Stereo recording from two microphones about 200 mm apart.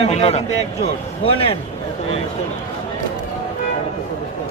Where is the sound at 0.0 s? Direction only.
30° left (ahead or behind).